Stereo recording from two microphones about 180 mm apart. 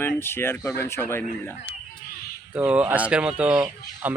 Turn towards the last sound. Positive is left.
turn(degrees=-5)  # may be behind; listen again after turning